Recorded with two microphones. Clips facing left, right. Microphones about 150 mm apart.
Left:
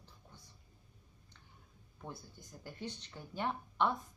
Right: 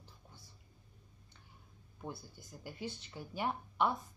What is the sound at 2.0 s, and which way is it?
Speech, 10° right (ahead or behind).